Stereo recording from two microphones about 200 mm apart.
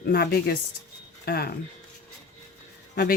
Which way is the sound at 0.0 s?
50° left (ahead or behind).